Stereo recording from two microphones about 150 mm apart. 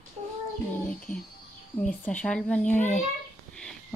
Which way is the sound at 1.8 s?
10° left (ahead or behind).